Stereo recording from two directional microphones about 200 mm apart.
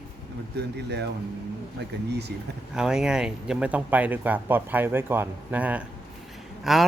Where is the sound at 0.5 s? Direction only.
55° right (ahead or behind).